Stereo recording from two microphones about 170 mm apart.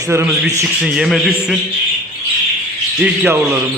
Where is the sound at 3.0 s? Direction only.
5° right (ahead or behind).